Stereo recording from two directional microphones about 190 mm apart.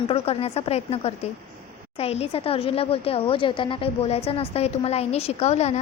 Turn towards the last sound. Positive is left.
turn(degrees=35)  # may be behind; listen again after turning